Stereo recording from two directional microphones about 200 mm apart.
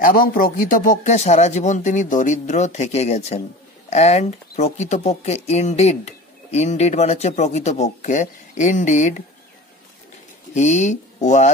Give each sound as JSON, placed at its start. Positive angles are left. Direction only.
{"t": 0.0, "sound": "speech", "side_deg": 45}
{"t": 10.5, "sound": "speech", "side_deg": 35}